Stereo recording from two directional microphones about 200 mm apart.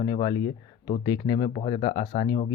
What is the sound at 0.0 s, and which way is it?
Speech, 25° left (ahead or behind).